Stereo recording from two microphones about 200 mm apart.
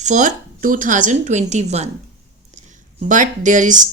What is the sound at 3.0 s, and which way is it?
Speech, 40° right (ahead or behind).